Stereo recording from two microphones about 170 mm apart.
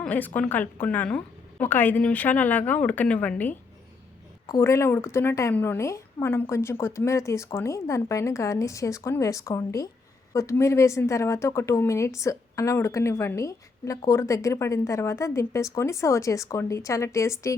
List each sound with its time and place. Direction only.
0.0 s a woman's voice: 10° left (ahead or behind)